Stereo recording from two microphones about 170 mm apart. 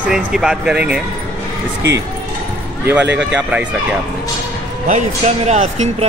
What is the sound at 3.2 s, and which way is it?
Speech, 5° right (ahead or behind).